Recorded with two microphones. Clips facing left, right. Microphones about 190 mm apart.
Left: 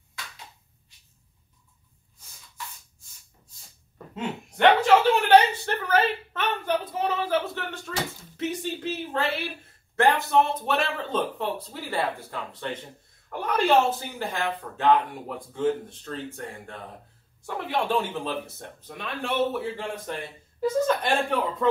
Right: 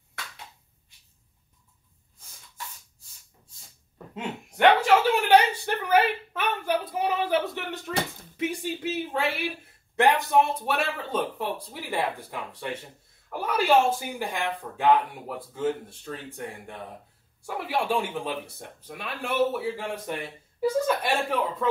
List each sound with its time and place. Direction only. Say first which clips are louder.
4.1 s speech: left 2 dB; 10° right (ahead or behind)
5.7 s a sound: right 1 dB; 15° right (ahead or behind)
8.4 s speech: even; 10° right (ahead or behind)
17.4 s speech: left 1 dB; 10° right (ahead or behind)